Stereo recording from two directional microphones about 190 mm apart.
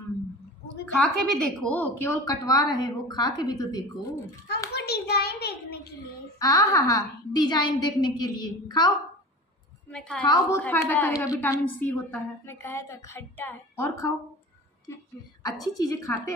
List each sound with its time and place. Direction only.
0.9 s a woman's voice: centre (ahead or behind); by 4.1 s 20° left (ahead or behind)
4.7 s a sound: 60° left (ahead or behind)
6.4 s a woman's voice: 20° left (ahead or behind)
9.8 s a woman's voice: 5° left (ahead or behind)
10.2 s a woman's voice: 20° left (ahead or behind)
10.6 s a woman's voice: 10° left (ahead or behind)
15.4 s a woman's voice: 20° left (ahead or behind)